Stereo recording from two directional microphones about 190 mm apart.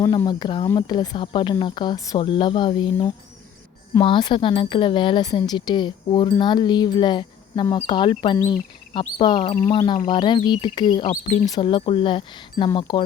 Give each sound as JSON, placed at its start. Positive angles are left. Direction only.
{"t": 0.0, "sound": "speech", "side_deg": 20}
{"t": 11.0, "sound": "speech", "side_deg": 40}
{"t": 11.4, "sound": "speech", "side_deg": 25}